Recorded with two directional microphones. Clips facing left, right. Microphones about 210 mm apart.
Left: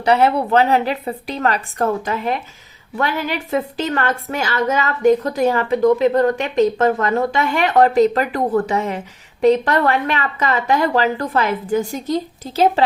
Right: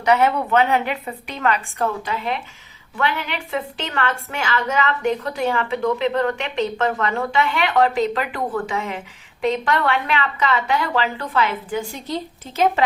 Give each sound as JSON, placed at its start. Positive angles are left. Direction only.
{"t": 0.0, "sound": "a woman's voice", "side_deg": 30}